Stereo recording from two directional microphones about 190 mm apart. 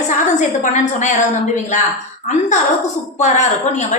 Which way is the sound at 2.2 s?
40° left (ahead or behind).